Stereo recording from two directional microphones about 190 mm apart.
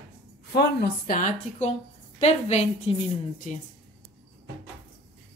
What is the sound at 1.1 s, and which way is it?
A woman's voice, 40° left (ahead or behind).